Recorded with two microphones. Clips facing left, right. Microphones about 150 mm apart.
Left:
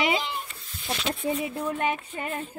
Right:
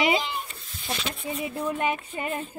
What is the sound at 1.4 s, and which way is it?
Speech, centre (ahead or behind).